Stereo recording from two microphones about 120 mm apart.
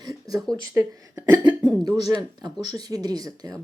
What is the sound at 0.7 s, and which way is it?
Speech, 25° right (ahead or behind).